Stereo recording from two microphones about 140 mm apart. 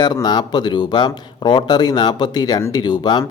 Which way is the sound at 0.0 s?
30° left (ahead or behind).